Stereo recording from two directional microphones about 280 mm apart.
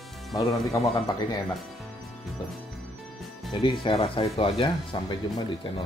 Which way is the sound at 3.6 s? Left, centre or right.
Centre.